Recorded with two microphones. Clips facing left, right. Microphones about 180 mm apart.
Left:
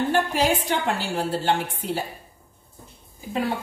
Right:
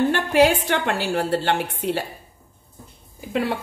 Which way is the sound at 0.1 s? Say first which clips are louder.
Right 4 dB; 70° right (ahead or behind).